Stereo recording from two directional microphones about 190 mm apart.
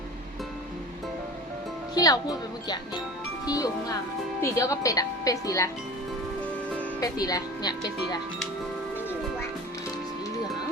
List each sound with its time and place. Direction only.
2.0 s speech: 20° left (ahead or behind)
3.4 s speech: 20° left (ahead or behind)
7.0 s speech: 20° left (ahead or behind)